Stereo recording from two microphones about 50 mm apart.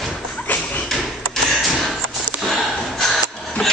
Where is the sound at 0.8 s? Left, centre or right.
Centre.